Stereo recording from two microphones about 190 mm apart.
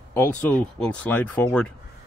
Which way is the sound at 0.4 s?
10° left (ahead or behind).